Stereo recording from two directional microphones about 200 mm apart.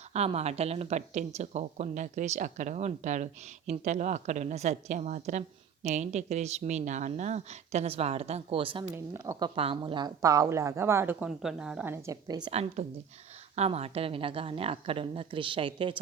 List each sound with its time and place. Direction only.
0.1 s a woman's voice: 30° right (ahead or behind)
9.1 s speech: 15° right (ahead or behind)
12.5 s a woman's voice: 30° right (ahead or behind)